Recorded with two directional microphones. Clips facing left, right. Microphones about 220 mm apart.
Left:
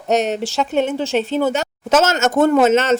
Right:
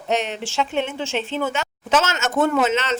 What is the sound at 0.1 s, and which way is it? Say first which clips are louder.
Speech: left 6 dB; 40° left (ahead or behind).